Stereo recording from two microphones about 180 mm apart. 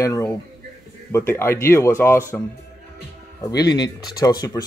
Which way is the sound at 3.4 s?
20° left (ahead or behind).